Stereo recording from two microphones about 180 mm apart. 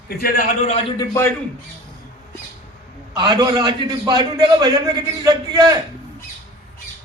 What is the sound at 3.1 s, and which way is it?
A man's voice, 25° right (ahead or behind).